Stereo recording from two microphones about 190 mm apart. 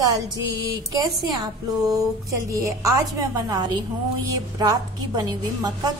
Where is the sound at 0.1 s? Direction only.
20° right (ahead or behind).